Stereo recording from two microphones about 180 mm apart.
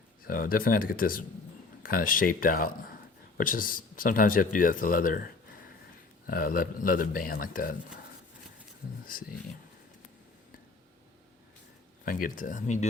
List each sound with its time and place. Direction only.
0.3 s speech: 50° left (ahead or behind)
6.2 s speech: 55° left (ahead or behind)
9.1 s speech: 50° left (ahead or behind)
12.0 s speech: 50° left (ahead or behind)